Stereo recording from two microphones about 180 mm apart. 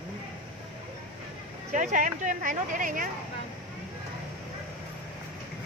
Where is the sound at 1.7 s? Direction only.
45° right (ahead or behind).